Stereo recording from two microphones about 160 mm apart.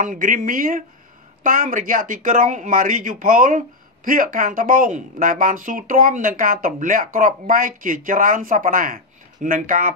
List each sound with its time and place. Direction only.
0.0 s speech: 55° right (ahead or behind)